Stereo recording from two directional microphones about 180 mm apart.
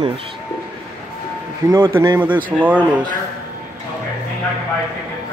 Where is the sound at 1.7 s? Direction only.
20° right (ahead or behind).